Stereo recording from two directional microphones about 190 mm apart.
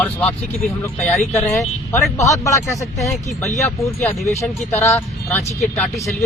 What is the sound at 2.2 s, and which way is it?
Speech, 15° left (ahead or behind).